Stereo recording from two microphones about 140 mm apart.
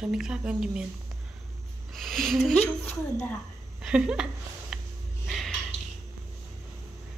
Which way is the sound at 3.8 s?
5° right (ahead or behind).